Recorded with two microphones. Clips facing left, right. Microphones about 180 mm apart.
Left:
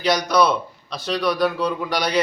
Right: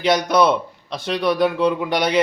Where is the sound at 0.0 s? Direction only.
25° right (ahead or behind).